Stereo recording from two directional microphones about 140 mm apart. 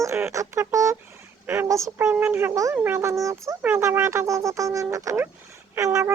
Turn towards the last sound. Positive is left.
turn(degrees=-20)  # may be behind; listen again after turning